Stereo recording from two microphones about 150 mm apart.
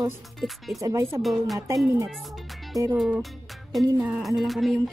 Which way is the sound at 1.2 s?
Centre (ahead or behind).